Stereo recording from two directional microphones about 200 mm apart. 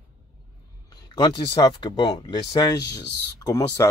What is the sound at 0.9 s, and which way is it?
Speech, 20° left (ahead or behind).